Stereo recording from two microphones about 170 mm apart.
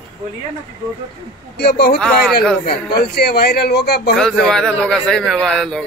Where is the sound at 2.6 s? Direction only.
70° left (ahead or behind).